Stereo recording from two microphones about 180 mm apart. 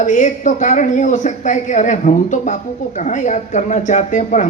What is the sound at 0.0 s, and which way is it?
Speech, 45° left (ahead or behind).